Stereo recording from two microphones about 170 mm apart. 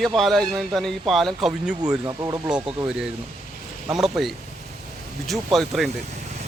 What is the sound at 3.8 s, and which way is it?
Speech, 5° right (ahead or behind).